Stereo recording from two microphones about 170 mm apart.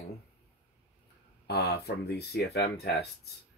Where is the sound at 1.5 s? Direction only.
70° left (ahead or behind).